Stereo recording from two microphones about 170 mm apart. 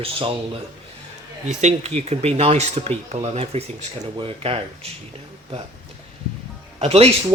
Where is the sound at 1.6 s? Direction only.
40° right (ahead or behind).